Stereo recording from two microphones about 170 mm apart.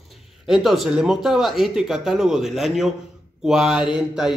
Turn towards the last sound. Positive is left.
turn(degrees=-5)  # may be behind; listen again after turning